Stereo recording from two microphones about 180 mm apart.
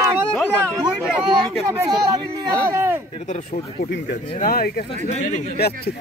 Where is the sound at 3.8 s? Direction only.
65° left (ahead or behind).